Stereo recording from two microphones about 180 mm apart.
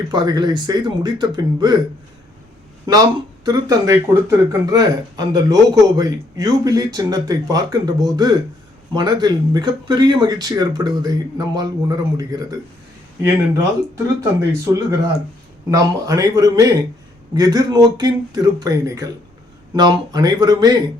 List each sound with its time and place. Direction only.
0.1 s speech: 25° right (ahead or behind)
2.8 s speech: 20° right (ahead or behind)
15.7 s speech: 20° right (ahead or behind)